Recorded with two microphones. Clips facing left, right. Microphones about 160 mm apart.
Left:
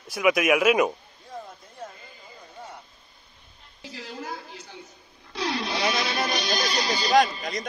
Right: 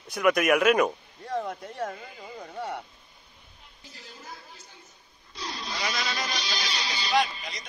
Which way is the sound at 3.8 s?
85° left.